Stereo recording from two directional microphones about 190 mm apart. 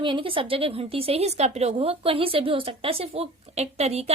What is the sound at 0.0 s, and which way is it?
A woman's voice, 25° right (ahead or behind).